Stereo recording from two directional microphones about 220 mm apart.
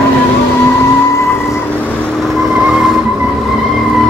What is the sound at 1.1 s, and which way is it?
Vehicle, 10° left (ahead or behind).